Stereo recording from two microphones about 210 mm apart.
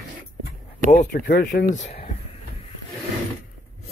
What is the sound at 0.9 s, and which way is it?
Speech, 35° left (ahead or behind).